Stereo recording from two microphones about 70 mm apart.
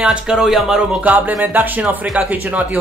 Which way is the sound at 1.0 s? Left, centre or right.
Right.